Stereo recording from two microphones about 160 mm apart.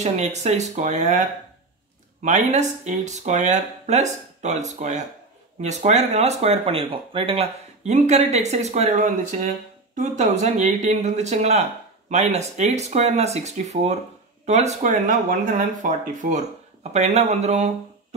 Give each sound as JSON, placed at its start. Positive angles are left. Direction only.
{"t": 0.0, "sound": "speech", "side_deg": -45}
{"t": 2.2, "sound": "speech", "side_deg": -45}
{"t": 16.9, "sound": "speech", "side_deg": -45}